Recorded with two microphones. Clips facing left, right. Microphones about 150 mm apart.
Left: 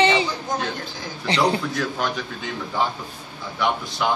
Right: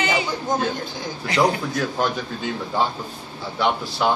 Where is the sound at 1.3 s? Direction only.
30° left (ahead or behind).